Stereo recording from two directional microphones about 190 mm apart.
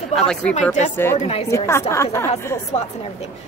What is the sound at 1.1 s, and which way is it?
Speech, 35° left (ahead or behind).